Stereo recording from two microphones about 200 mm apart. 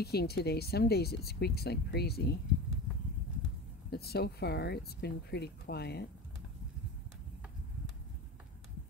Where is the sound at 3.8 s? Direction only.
50° left (ahead or behind).